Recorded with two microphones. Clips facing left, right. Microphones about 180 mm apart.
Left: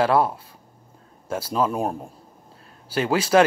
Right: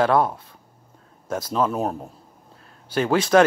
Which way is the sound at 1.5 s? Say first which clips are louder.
Even; 10° left (ahead or behind).